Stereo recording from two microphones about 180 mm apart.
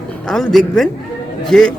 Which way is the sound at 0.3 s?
Centre (ahead or behind).